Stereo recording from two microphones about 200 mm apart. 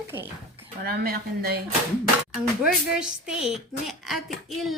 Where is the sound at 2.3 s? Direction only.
Centre (ahead or behind).